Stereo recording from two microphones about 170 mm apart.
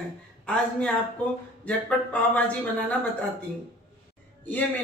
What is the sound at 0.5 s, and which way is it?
Speech, 5° left (ahead or behind).